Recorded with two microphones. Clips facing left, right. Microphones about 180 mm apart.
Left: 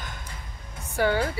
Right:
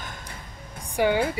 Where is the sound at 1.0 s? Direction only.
15° right (ahead or behind).